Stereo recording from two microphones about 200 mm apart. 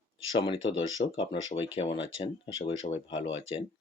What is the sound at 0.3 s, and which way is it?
Speech, 25° left (ahead or behind).